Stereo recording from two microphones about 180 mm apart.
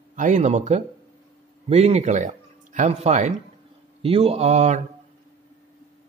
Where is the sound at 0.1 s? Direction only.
45° right (ahead or behind).